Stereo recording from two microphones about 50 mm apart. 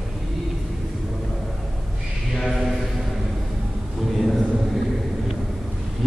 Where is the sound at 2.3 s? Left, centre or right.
Centre.